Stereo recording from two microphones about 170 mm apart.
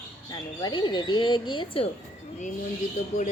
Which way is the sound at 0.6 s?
25° left (ahead or behind).